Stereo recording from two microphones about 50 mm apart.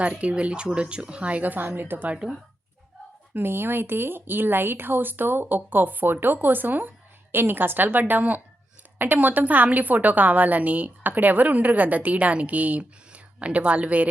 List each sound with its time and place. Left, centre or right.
0.0 s a woman's voice: right
3.3 s a woman's voice: right